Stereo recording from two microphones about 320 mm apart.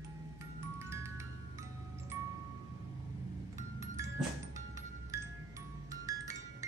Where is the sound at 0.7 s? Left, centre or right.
Centre.